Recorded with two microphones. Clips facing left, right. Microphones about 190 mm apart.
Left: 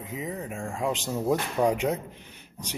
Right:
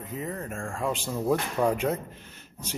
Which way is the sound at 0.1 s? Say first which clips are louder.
Even; 10° left (ahead or behind).